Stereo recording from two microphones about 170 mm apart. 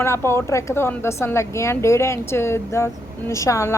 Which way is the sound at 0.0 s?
15° left (ahead or behind).